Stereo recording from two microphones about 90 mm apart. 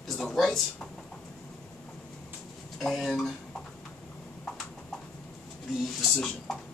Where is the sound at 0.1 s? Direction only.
Centre (ahead or behind).